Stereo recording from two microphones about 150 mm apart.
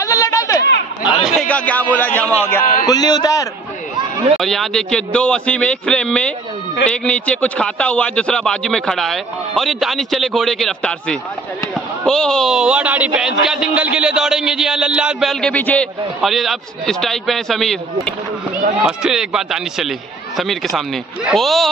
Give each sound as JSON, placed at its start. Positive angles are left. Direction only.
{"t": 0.0, "sound": "a sound", "side_deg": 20}
{"t": 1.2, "sound": "a man's voice", "side_deg": 5}
{"t": 2.6, "sound": "a man's voice", "side_deg": 65}
{"t": 2.9, "sound": "a man's voice", "side_deg": 25}
{"t": 4.4, "sound": "a man's voice", "side_deg": 0}
{"t": 15.5, "sound": "a man's voice", "side_deg": 10}
{"t": 16.2, "sound": "a man's voice", "side_deg": 0}
{"t": 18.9, "sound": "a man's voice", "side_deg": -5}